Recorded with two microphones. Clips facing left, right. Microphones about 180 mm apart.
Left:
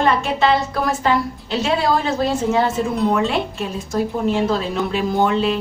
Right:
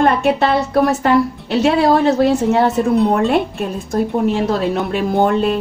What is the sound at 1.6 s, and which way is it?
A woman's voice, 65° right (ahead or behind).